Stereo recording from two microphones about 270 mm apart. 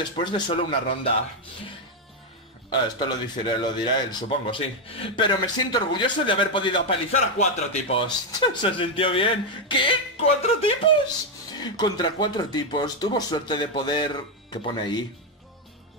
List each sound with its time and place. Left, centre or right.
0.1 s speech: centre
2.7 s speech: centre